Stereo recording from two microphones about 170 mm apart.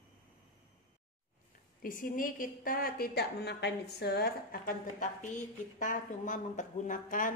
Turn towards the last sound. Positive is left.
turn(degrees=50)  # may be behind; listen again after turning